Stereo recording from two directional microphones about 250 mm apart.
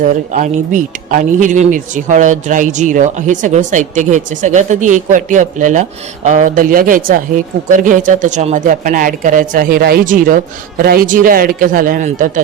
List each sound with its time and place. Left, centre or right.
0.0 s speech: right